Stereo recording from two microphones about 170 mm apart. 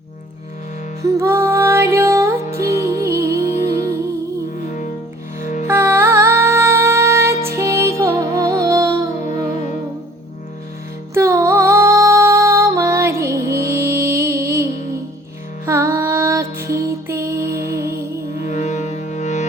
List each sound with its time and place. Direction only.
1.0 s music: 15° right (ahead or behind)
5.4 s music: 45° left (ahead or behind)
5.6 s music: 15° right (ahead or behind)
11.1 s music: 15° right (ahead or behind)
18.4 s music: 45° left (ahead or behind)